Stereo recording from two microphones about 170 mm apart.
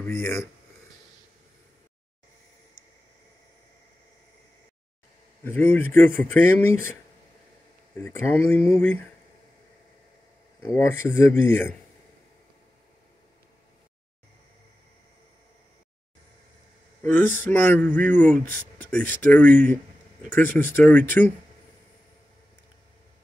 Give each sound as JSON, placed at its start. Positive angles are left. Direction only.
{"t": 0.0, "sound": "speech", "side_deg": 15}
{"t": 5.4, "sound": "speech", "side_deg": 10}
{"t": 8.0, "sound": "speech", "side_deg": 15}
{"t": 10.6, "sound": "speech", "side_deg": 15}
{"t": 17.0, "sound": "speech", "side_deg": 10}